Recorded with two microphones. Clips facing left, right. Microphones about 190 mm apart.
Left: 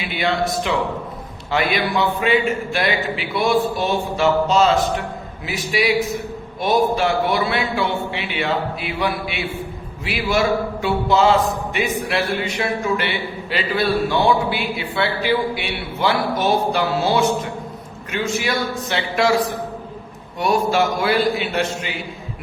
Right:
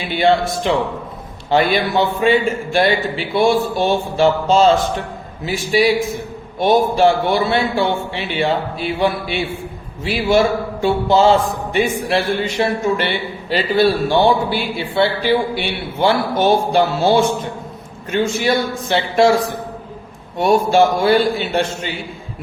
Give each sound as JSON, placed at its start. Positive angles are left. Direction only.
{"t": 0.1, "sound": "a man's voice", "side_deg": -30}
{"t": 20.4, "sound": "a man's voice", "side_deg": -25}